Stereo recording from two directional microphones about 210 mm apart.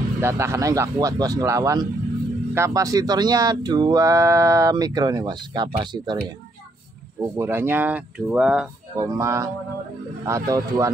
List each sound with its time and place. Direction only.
0.2 s speech: 15° right (ahead or behind)
8.9 s speech: 15° right (ahead or behind)